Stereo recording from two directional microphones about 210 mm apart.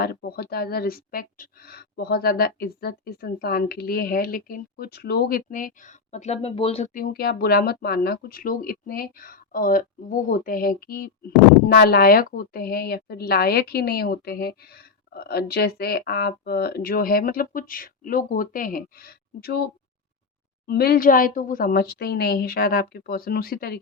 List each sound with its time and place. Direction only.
0.0 s speech: 45° left (ahead or behind)
20.7 s speech: 45° left (ahead or behind)